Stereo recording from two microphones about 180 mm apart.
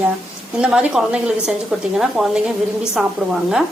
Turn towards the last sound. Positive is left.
turn(degrees=0)  # may be behind; listen again after turning